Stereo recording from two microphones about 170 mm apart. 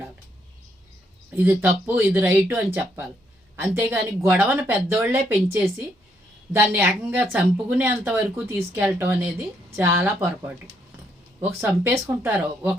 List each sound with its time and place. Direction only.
1.3 s speech: 10° right (ahead or behind)
2.7 s speech: 15° right (ahead or behind)
11.6 s speech: 10° right (ahead or behind)